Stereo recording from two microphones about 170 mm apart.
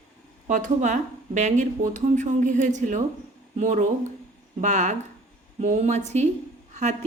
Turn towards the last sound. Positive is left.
turn(degrees=-45)  # may be behind; listen again after turning